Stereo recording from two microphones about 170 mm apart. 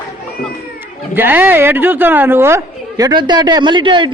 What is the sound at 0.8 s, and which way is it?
A woman's voice, 10° right (ahead or behind).